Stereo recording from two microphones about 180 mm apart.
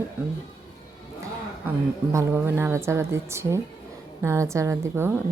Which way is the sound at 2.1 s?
15° right (ahead or behind).